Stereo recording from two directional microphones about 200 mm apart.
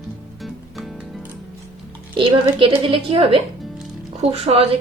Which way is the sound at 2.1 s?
25° right (ahead or behind).